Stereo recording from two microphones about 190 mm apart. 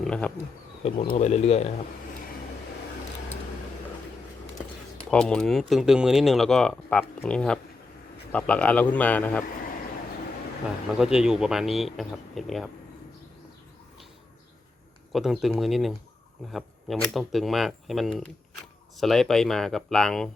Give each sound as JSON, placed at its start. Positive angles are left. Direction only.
{"t": 0.0, "sound": "speech", "side_deg": 5}
{"t": 0.8, "sound": "speech", "side_deg": 30}
{"t": 5.1, "sound": "a man's voice", "side_deg": 5}
{"t": 10.9, "sound": "speech", "side_deg": -5}
{"t": 15.1, "sound": "speech", "side_deg": 0}